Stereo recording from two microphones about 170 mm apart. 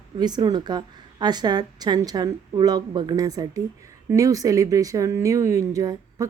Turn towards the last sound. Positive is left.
turn(degrees=-20)  # may be behind; listen again after turning